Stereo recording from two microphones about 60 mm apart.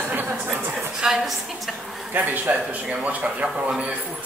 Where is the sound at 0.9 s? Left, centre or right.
Centre.